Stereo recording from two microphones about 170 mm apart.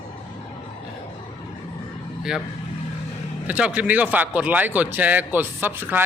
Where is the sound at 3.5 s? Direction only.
5° right (ahead or behind).